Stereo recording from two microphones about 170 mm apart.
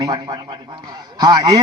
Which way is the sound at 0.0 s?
20° right (ahead or behind).